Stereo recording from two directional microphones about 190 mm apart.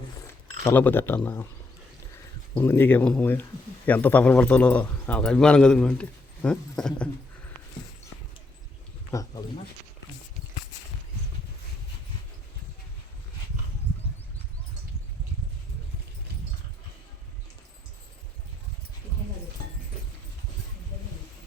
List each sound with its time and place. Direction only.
0.6 s a man's voice: 10° left (ahead or behind)
2.6 s a man's voice: 10° left (ahead or behind)
9.1 s a man's voice: 15° left (ahead or behind)